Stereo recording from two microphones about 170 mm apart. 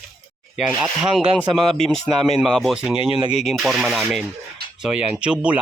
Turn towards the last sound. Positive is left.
turn(degrees=-5)  # may be behind; listen again after turning